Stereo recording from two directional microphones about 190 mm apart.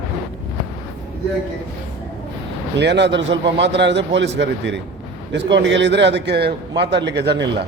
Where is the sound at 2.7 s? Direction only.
65° right (ahead or behind).